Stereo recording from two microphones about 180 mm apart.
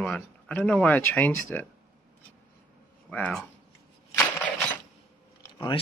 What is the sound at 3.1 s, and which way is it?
Speech, 5° left (ahead or behind).